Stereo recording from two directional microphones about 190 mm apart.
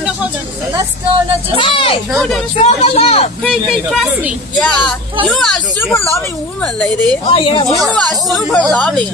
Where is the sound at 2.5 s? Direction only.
35° left (ahead or behind).